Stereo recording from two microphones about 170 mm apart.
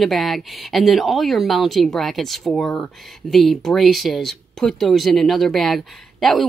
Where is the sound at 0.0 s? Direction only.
Centre (ahead or behind).